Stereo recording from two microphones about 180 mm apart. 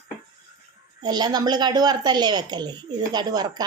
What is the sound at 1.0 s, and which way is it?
Speech, 25° right (ahead or behind).